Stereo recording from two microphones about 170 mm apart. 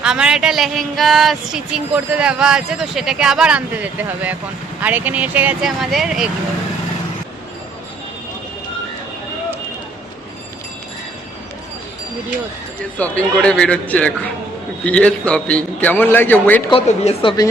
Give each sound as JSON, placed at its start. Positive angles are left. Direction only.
{"t": 0.0, "sound": "speech", "side_deg": -5}
{"t": 13.0, "sound": "a man's voice", "side_deg": 5}
{"t": 16.6, "sound": "a woman's voice", "side_deg": 35}
{"t": 17.2, "sound": "speech", "side_deg": 20}